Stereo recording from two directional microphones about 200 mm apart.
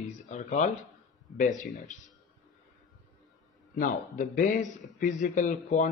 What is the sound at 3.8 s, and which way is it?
Speech, 40° left (ahead or behind).